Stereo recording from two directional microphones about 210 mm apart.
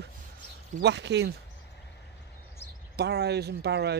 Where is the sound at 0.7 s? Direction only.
55° right (ahead or behind).